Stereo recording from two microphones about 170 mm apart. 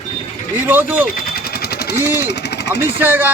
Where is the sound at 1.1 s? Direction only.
60° left (ahead or behind).